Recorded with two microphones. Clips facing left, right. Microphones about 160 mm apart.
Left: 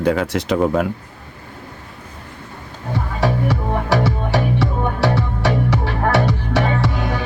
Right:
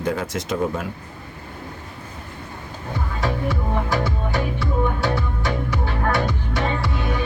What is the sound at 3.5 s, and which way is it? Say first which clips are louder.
Music: left 4 dB; 75° left (ahead or behind).